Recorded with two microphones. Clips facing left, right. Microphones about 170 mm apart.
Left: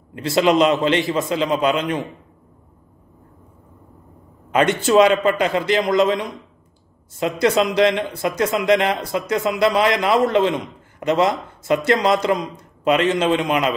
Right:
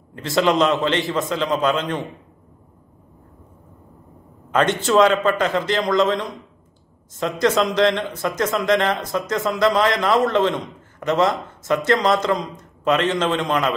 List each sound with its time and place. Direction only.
0.1 s speech: 15° left (ahead or behind)
4.8 s speech: 15° left (ahead or behind)
12.5 s a sound: 10° left (ahead or behind)
13.1 s speech: 15° left (ahead or behind)